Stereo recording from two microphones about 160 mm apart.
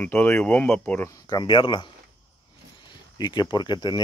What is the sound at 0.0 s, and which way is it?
Speech, 10° left (ahead or behind).